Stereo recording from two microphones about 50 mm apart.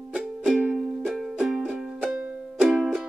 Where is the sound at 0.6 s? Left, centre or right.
Centre.